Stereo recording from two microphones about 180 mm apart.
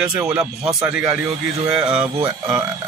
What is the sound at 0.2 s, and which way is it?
Speech, 5° right (ahead or behind).